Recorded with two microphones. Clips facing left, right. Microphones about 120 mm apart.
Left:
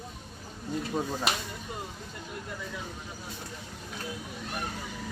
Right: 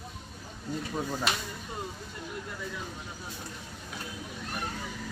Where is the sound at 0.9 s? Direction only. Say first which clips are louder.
Left 1 dB; 15° left (ahead or behind).